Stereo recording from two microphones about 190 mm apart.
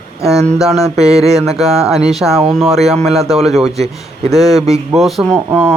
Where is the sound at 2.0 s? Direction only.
Centre (ahead or behind).